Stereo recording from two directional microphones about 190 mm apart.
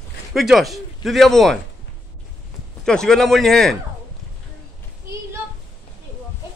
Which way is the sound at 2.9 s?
5° left (ahead or behind).